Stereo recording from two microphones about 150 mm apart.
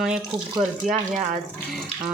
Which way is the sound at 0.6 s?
50° right (ahead or behind).